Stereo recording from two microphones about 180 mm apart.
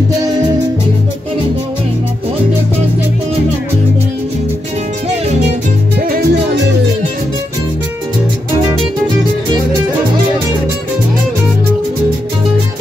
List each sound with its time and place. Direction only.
5.9 s music: 55° right (ahead or behind)